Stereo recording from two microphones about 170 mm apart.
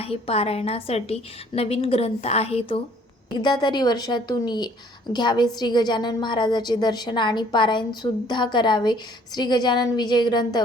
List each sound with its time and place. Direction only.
0.0 s a woman's voice: 35° left (ahead or behind)